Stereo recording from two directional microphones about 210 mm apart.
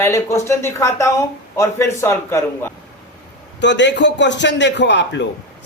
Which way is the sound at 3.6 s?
55° left (ahead or behind).